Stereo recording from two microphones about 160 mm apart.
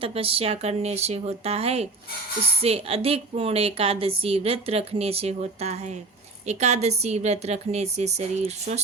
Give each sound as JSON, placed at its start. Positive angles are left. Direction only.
{"t": 0.0, "sound": "a woman's voice", "side_deg": -35}